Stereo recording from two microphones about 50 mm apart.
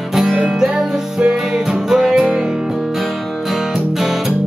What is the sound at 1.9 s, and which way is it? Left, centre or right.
Music, centre.